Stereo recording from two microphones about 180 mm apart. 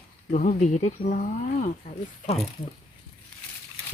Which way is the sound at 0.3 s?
45° left (ahead or behind).